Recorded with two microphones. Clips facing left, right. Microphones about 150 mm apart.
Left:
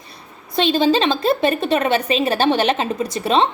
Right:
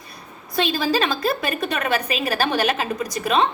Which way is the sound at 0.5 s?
25° left (ahead or behind).